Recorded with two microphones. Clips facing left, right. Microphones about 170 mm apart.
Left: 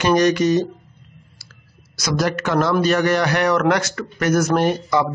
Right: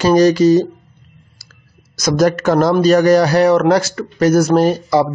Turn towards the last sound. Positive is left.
turn(degrees=-35)  # may be behind; listen again after turning